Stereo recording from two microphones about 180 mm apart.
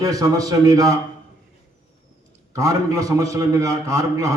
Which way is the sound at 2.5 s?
20° right (ahead or behind).